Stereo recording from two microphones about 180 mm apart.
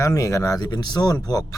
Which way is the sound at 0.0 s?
20° left (ahead or behind).